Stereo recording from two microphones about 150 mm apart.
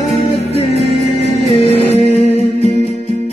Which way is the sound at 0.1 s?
45° left (ahead or behind).